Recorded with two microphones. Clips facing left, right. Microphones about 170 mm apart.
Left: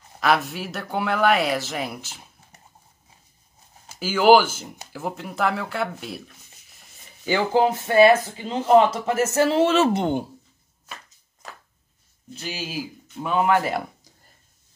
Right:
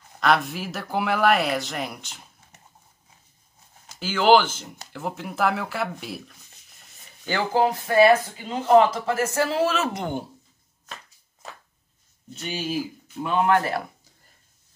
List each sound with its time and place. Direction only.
0.2 s speech: 5° left (ahead or behind)
3.9 s speech: 10° left (ahead or behind)
7.2 s speech: 20° left (ahead or behind)
12.4 s speech: centre (ahead or behind)